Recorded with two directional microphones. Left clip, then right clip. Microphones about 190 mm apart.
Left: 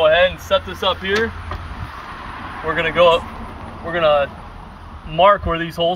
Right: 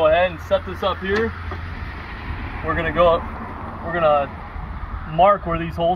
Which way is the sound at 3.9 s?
20° left (ahead or behind).